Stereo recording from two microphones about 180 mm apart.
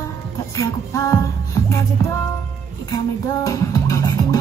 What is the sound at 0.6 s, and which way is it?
Music, 15° left (ahead or behind).